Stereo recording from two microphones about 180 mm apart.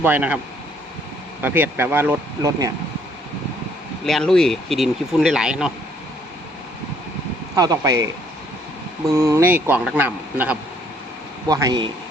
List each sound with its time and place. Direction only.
0.0 s a man's voice: 10° right (ahead or behind)
1.4 s a man's voice: 10° right (ahead or behind)
4.0 s speech: centre (ahead or behind)
7.5 s speech: 20° right (ahead or behind)
9.1 s a man's voice: 15° right (ahead or behind)
11.4 s speech: 20° right (ahead or behind)